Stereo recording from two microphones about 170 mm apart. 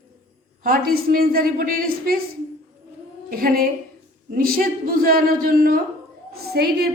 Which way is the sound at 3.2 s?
60° right (ahead or behind).